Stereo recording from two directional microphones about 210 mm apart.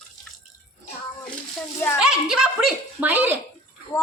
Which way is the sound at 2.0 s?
5° right (ahead or behind).